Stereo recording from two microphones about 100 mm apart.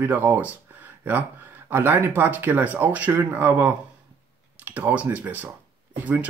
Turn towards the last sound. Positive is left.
turn(degrees=-15)  # may be behind; listen again after turning